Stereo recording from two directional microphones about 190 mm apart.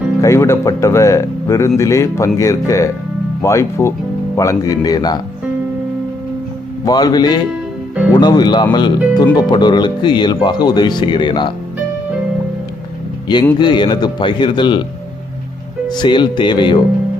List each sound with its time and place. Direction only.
0.2 s speech: 15° left (ahead or behind)
6.8 s speech: 20° left (ahead or behind)
13.2 s speech: 20° left (ahead or behind)
15.9 s speech: 25° left (ahead or behind)